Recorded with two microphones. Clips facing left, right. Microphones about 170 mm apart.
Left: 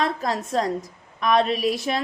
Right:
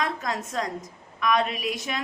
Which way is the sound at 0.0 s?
30° left (ahead or behind).